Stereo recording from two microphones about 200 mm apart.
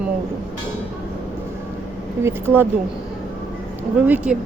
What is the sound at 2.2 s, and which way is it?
Speech, 10° right (ahead or behind).